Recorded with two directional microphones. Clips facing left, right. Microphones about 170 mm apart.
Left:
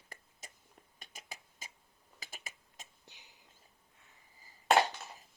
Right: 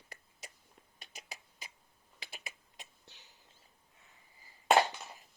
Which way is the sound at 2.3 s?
45° left (ahead or behind).